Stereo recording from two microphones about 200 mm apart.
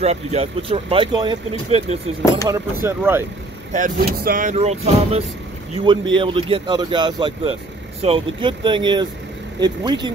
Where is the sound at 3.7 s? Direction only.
40° right (ahead or behind).